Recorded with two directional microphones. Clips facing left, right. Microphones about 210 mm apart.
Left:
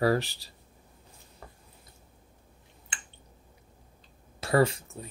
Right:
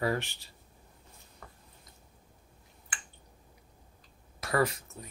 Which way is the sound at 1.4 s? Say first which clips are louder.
Left 3 dB; 25° left (ahead or behind).